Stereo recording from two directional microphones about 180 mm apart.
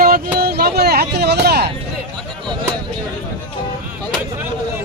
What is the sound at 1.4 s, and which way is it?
Music, 65° right (ahead or behind).